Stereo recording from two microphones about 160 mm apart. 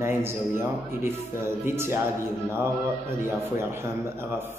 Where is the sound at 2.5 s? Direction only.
15° right (ahead or behind).